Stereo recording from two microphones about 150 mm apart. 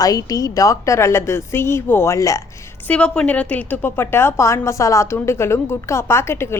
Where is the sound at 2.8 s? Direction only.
10° left (ahead or behind).